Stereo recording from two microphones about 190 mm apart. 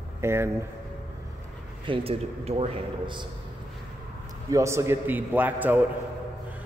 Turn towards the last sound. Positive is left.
turn(degrees=-10)  # may be behind; listen again after turning